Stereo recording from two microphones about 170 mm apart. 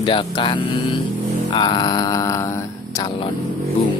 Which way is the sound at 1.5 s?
25° left (ahead or behind).